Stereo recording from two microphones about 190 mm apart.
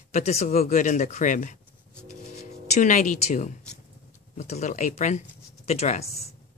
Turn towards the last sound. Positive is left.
turn(degrees=35)  # may be behind; listen again after turning